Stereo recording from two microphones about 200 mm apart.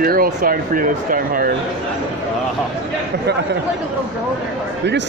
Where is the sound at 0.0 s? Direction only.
45° right (ahead or behind).